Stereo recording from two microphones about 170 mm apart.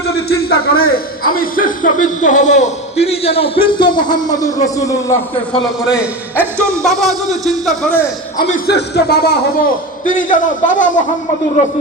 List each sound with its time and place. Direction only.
0.3 s a man's voice: 65° left (ahead or behind); by 4.9 s 20° left (ahead or behind)
6.8 s speech: centre (ahead or behind)
8.6 s a man's voice: 65° left (ahead or behind); by 11.7 s 45° left (ahead or behind)